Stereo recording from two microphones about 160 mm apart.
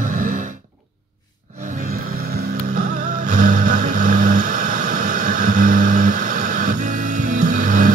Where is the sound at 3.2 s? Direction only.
55° right (ahead or behind).